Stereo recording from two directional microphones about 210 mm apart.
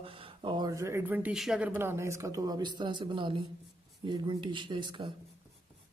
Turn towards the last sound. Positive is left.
turn(degrees=-20)  # may be behind; listen again after turning